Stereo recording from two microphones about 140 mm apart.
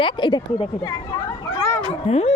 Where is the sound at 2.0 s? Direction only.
50° left (ahead or behind).